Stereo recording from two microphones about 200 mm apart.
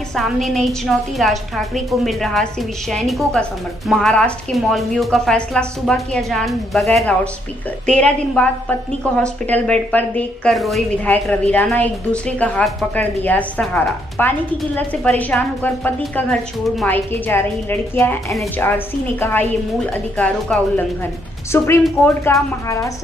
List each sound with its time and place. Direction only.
0.1 s a woman's voice: centre (ahead or behind)